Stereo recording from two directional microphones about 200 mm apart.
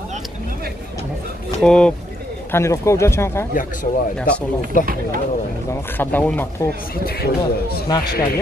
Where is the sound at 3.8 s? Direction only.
35° left (ahead or behind).